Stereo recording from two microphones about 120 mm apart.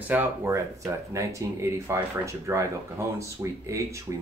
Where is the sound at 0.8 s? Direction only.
25° right (ahead or behind).